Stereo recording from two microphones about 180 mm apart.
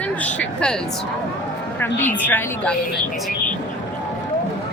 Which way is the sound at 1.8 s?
10° left (ahead or behind).